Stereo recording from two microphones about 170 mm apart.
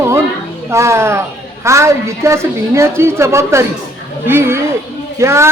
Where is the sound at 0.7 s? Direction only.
15° right (ahead or behind).